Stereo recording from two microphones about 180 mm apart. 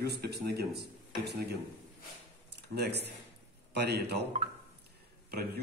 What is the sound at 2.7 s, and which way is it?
A man's voice, 65° right (ahead or behind).